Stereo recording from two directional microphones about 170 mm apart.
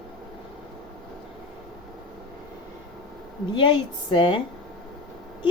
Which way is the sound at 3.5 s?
25° left (ahead or behind).